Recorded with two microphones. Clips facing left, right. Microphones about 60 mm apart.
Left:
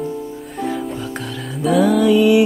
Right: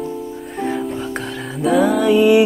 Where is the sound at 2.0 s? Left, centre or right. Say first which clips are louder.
Right 2 dB; right.